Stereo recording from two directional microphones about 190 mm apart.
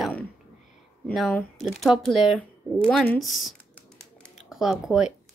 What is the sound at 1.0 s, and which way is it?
Speech, 5° left (ahead or behind).